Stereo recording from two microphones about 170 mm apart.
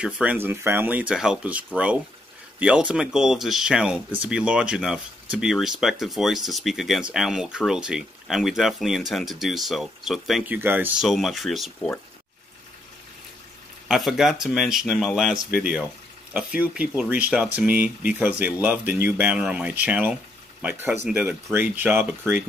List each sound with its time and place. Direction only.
0.0 s speech: 10° right (ahead or behind)
13.8 s speech: centre (ahead or behind)